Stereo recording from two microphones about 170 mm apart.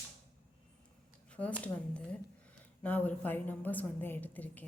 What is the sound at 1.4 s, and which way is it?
Speech, 15° right (ahead or behind).